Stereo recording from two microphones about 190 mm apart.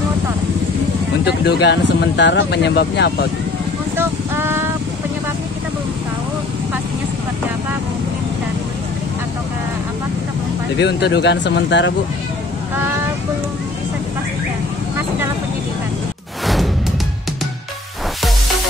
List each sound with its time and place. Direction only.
1.2 s speech: 60° left (ahead or behind)
3.9 s vehicle: 10° right (ahead or behind)
10.8 s speech: 65° left (ahead or behind)